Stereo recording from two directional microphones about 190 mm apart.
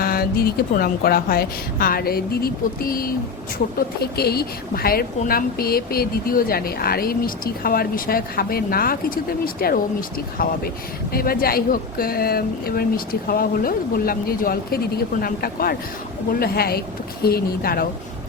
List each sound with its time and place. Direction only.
0.0 s a woman's voice: 50° left (ahead or behind)